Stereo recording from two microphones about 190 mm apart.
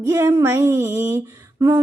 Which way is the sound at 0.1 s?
15° right (ahead or behind).